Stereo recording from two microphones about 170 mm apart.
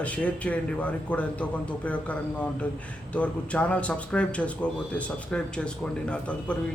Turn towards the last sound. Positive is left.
turn(degrees=5)  # may be behind; listen again after turning